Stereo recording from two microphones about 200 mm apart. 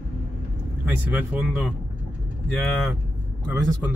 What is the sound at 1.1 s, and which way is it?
Speech, 5° right (ahead or behind).